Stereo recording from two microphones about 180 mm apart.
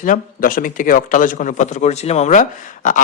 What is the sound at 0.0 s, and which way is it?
A man's voice, 50° left (ahead or behind).